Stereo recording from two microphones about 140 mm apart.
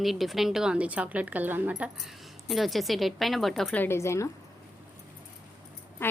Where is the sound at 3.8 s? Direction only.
20° left (ahead or behind).